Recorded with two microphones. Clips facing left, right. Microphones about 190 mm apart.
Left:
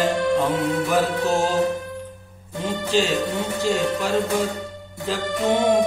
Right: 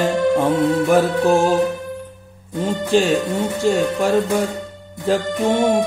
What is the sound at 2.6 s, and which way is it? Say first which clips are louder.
Speech: right 5 dB; 50° right (ahead or behind).